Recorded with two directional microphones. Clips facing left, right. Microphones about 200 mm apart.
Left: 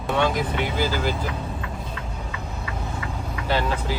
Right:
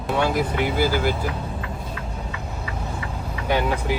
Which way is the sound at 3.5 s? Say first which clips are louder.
Right 2 dB; 15° right (ahead or behind).